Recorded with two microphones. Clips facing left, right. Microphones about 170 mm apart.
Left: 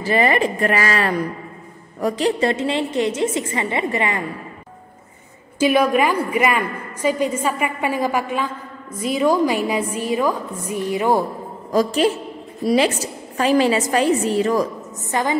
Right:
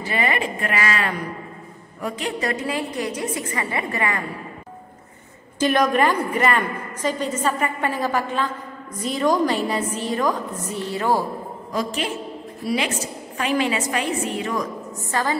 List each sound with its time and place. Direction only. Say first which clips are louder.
0.0 s a woman's voice: left 6 dB; 40° left (ahead or behind); by 4.2 s 25° left (ahead or behind)
5.6 s a woman's voice: left 2 dB; 10° left (ahead or behind)
11.7 s a woman's voice: left 8 dB; 40° left (ahead or behind)
15.0 s a woman's voice: left 3 dB; 20° left (ahead or behind)